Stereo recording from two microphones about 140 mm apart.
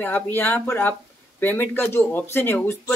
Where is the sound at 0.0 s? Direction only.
15° left (ahead or behind).